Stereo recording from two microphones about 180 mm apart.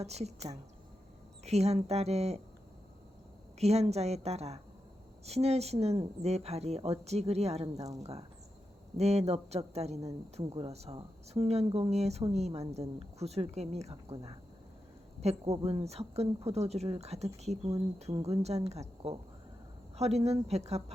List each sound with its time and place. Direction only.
0.0 s a woman's voice: 35° right (ahead or behind)
3.6 s a woman's voice: 35° right (ahead or behind)
13.9 s speech: 20° right (ahead or behind)
15.2 s a woman's voice: 35° right (ahead or behind)